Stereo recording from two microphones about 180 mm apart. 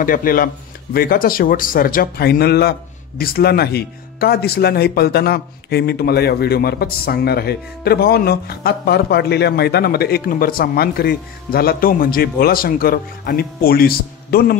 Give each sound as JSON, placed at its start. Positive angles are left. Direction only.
{"t": 0.0, "sound": "speech", "side_deg": 50}